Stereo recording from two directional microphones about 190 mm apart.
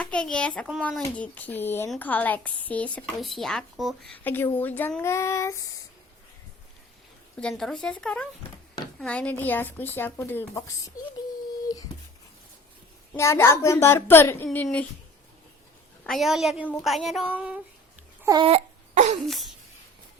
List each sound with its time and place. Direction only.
0.0 s speech: 5° left (ahead or behind)
7.3 s speech: 5° left (ahead or behind)
13.1 s speech: 15° left (ahead or behind)
16.0 s speech: centre (ahead or behind)
18.2 s babbling: 20° right (ahead or behind)
18.4 s baby cry: 35° right (ahead or behind)
19.3 s speech: centre (ahead or behind)